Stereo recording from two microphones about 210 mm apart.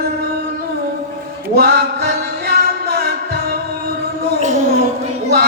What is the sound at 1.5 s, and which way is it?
Music, 50° right (ahead or behind).